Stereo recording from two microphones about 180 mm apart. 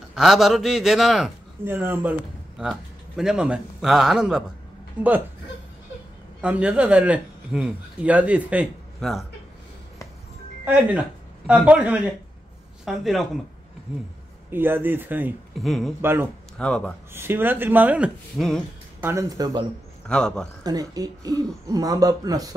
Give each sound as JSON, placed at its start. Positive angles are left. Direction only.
{"t": 0.1, "sound": "a man's voice", "side_deg": 0}
{"t": 1.6, "sound": "a man's voice", "side_deg": -10}
{"t": 6.4, "sound": "speech", "side_deg": -5}
{"t": 10.6, "sound": "a man's voice", "side_deg": -10}
{"t": 14.5, "sound": "speech", "side_deg": -10}
{"t": 15.5, "sound": "a man's voice", "side_deg": 0}
{"t": 16.0, "sound": "speech", "side_deg": -10}
{"t": 16.5, "sound": "a man's voice", "side_deg": 5}
{"t": 17.1, "sound": "speech", "side_deg": -10}
{"t": 18.9, "sound": "speech", "side_deg": -15}
{"t": 20.1, "sound": "a man's voice", "side_deg": 5}
{"t": 20.6, "sound": "speech", "side_deg": -20}